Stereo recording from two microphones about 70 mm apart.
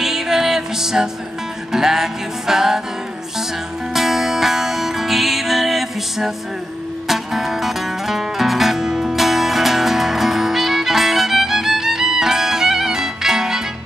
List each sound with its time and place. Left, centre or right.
0.0 s music: centre
3.9 s music: centre